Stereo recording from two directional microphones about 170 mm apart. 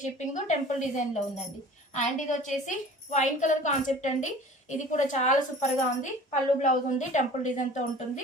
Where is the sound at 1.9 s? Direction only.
45° left (ahead or behind).